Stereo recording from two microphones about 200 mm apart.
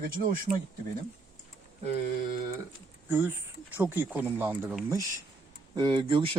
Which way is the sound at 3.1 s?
10° right (ahead or behind).